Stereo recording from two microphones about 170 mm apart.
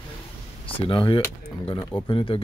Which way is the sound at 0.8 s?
30° left (ahead or behind).